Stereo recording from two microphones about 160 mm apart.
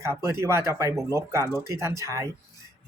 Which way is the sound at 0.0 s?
15° right (ahead or behind).